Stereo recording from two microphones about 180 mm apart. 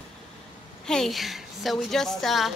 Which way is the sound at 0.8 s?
Centre (ahead or behind).